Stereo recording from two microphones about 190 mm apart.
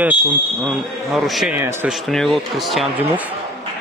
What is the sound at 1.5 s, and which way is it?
Speech, 15° right (ahead or behind).